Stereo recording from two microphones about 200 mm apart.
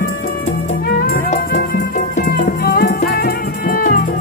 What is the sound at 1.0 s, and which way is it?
Music, 50° left (ahead or behind).